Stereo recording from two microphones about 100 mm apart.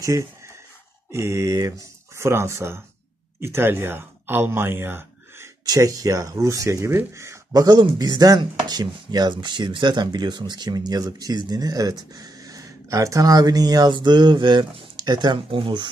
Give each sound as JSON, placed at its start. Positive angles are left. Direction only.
{"t": 0.0, "sound": "speech", "side_deg": -35}
{"t": 5.7, "sound": "speech", "side_deg": -35}